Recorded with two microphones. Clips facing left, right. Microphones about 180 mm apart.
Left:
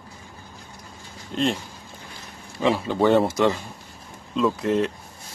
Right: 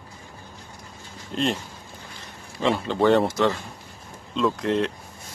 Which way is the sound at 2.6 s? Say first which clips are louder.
Left 1 dB; 5° left (ahead or behind).